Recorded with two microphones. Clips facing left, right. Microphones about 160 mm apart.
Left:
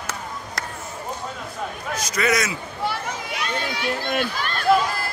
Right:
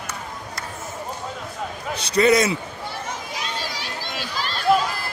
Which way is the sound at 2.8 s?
60° left (ahead or behind).